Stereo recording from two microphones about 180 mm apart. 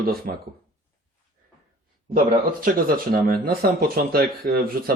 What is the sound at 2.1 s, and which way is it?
Speech, 55° right (ahead or behind).